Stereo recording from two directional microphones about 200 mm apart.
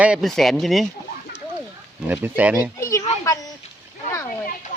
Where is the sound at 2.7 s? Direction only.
15° left (ahead or behind).